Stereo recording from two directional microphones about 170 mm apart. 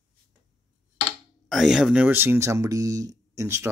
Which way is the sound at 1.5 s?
Centre (ahead or behind).